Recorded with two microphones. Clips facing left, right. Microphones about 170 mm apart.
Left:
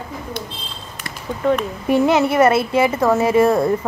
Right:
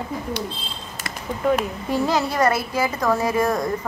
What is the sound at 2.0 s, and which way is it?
Speech, 25° left (ahead or behind).